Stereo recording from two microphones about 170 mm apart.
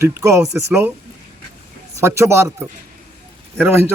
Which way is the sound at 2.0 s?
15° right (ahead or behind).